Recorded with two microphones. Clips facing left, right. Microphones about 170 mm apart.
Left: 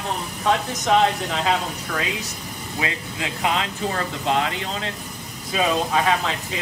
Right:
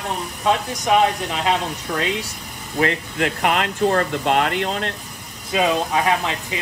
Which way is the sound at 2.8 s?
55° right (ahead or behind).